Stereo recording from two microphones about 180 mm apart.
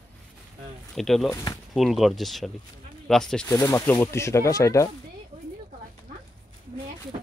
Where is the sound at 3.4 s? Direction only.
15° left (ahead or behind).